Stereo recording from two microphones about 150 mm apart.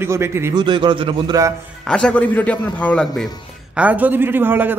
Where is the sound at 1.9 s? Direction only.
5° left (ahead or behind).